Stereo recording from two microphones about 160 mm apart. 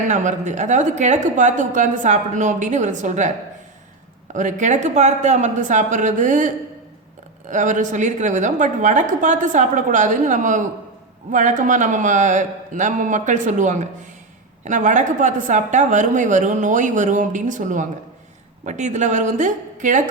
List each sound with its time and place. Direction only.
0.1 s a woman's voice: 50° right (ahead or behind)
4.4 s a woman's voice: 50° right (ahead or behind)
7.5 s a woman's voice: 50° right (ahead or behind)